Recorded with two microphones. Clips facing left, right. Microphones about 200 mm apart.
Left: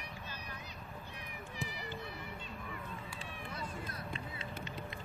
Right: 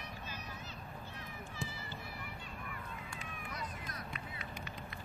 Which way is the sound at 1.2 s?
15° left (ahead or behind).